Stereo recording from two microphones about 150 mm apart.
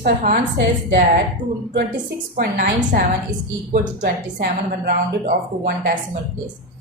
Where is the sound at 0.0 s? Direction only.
65° right (ahead or behind).